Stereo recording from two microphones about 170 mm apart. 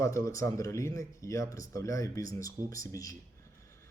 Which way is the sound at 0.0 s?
20° left (ahead or behind).